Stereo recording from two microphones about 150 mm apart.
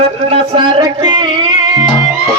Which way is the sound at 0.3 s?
35° right (ahead or behind).